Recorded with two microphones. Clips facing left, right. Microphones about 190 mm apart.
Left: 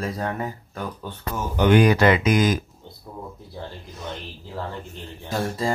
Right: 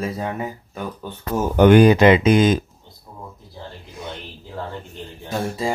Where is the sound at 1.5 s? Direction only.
50° right (ahead or behind).